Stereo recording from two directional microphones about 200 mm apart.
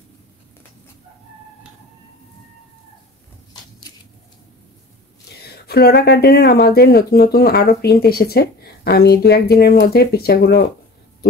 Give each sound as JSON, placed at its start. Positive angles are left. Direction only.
{"t": 5.4, "sound": "speech", "side_deg": 50}